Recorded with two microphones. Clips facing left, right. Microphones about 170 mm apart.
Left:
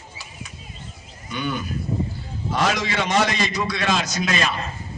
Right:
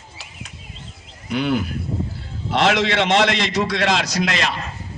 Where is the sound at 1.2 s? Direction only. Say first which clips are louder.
Right 6 dB; 75° right (ahead or behind).